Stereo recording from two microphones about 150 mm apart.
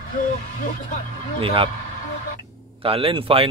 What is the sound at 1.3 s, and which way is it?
Speech, 40° right (ahead or behind).